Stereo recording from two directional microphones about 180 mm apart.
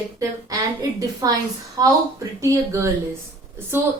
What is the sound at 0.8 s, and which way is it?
A woman's voice, 20° right (ahead or behind).